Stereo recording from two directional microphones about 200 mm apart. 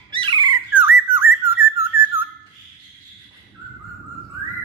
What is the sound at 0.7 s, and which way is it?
Squawk, 10° right (ahead or behind).